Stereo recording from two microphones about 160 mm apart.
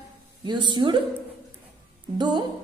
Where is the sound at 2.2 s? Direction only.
25° right (ahead or behind).